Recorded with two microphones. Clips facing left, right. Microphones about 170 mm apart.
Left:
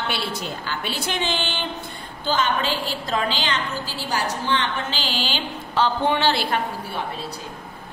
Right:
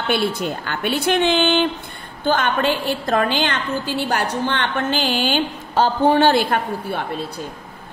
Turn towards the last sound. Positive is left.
turn(degrees=-50)  # may be behind; listen again after turning